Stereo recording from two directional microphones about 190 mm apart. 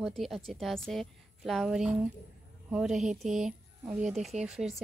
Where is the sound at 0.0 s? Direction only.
Centre (ahead or behind).